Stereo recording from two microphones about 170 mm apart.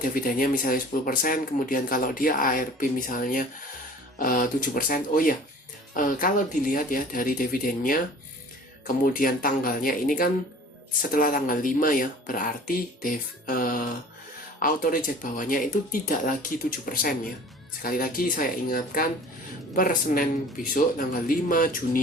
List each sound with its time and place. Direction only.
0.0 s speech: 55° left (ahead or behind)
9.1 s speech: 55° left (ahead or behind)
21.2 s speech: 55° left (ahead or behind)